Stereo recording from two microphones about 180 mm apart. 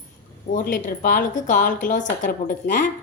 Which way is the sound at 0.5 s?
50° left (ahead or behind).